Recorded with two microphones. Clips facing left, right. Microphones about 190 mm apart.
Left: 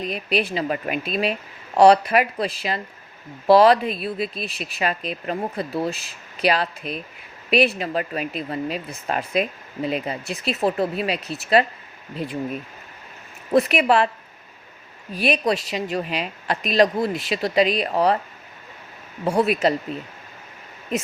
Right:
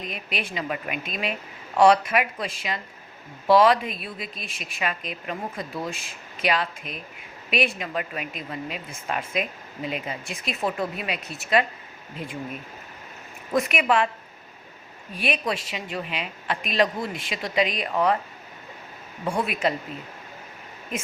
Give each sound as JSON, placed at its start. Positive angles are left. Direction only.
{"t": 0.0, "sound": "speech", "side_deg": 35}
{"t": 13.5, "sound": "speech", "side_deg": 35}
{"t": 15.1, "sound": "speech", "side_deg": 35}
{"t": 19.2, "sound": "speech", "side_deg": 35}